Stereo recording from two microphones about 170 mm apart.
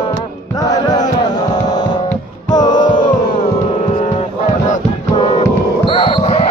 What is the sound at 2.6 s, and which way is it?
Music, 50° left (ahead or behind).